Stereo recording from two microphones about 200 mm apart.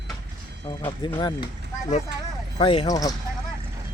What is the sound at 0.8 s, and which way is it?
Speech, 20° left (ahead or behind).